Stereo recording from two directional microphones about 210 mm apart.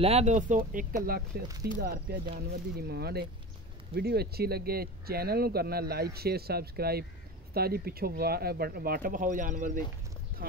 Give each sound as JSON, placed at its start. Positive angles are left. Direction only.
{"t": 0.0, "sound": "speech", "side_deg": -30}